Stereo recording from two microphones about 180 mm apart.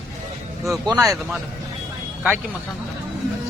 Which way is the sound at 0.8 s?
20° right (ahead or behind).